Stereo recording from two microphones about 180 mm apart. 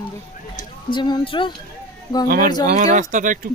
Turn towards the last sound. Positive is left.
turn(degrees=-45)  # may be behind; listen again after turning